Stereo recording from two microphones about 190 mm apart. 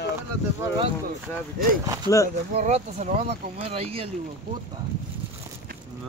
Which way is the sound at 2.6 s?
35° right (ahead or behind).